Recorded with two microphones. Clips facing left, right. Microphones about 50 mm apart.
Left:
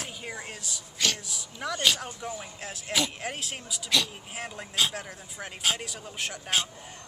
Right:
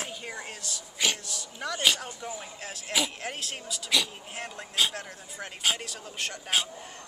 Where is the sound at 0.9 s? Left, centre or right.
Centre.